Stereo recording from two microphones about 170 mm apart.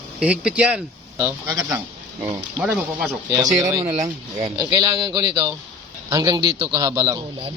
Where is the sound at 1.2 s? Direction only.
20° right (ahead or behind).